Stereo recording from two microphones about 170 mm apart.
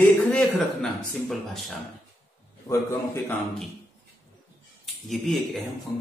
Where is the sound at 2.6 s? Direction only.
15° left (ahead or behind).